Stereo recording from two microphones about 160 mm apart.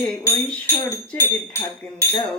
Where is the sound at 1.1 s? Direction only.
15° left (ahead or behind).